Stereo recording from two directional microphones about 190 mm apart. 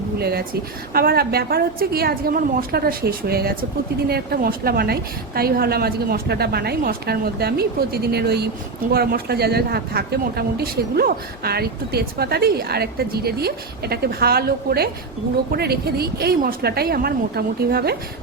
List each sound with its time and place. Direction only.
0.2 s a woman's voice: 55° right (ahead or behind)